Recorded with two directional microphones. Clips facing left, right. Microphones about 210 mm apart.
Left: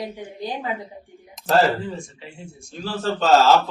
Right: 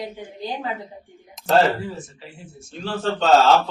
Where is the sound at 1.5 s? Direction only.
Centre (ahead or behind).